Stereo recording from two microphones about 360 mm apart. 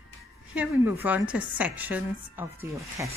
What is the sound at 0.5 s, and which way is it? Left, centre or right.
Speech, centre.